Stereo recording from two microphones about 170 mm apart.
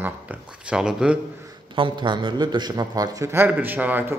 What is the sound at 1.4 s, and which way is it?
A man's voice, 25° right (ahead or behind).